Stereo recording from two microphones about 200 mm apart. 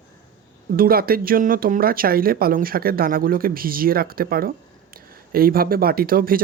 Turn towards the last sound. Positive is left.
turn(degrees=-45)  # may be behind; listen again after turning